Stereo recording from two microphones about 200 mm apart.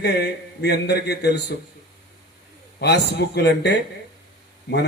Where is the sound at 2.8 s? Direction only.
55° left (ahead or behind).